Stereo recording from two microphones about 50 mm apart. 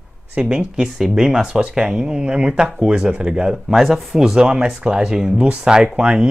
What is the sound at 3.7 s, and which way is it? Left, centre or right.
Speech, centre.